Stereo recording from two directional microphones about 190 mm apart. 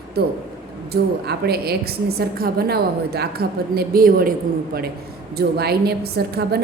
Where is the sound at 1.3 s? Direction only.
55° right (ahead or behind).